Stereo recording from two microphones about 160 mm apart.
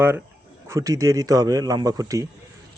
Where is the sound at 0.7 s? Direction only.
20° right (ahead or behind).